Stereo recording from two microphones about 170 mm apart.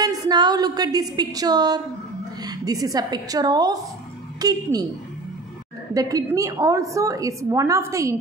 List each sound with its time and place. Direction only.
0.0 s a woman's voice: 25° right (ahead or behind)
5.9 s a woman's voice: 20° right (ahead or behind)